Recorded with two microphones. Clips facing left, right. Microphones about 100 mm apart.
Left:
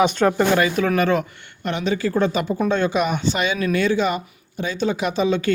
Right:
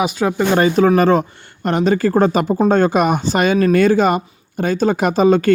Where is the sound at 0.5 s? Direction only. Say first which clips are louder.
Right 6 dB; 30° right (ahead or behind).